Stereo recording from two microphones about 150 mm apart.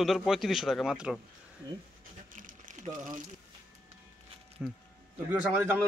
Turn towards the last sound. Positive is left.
turn(degrees=-10)  # may be behind; listen again after turning